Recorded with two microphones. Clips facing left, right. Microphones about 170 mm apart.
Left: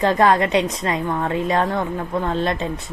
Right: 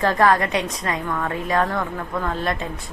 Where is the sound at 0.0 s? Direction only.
20° left (ahead or behind).